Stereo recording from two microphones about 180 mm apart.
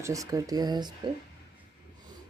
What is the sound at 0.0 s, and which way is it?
Speech, 20° right (ahead or behind).